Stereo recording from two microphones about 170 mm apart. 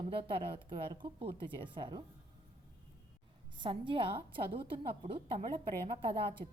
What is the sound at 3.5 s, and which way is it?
A woman's voice, 30° right (ahead or behind).